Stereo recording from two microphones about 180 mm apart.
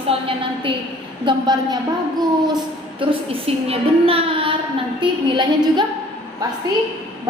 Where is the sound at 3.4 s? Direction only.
30° right (ahead or behind).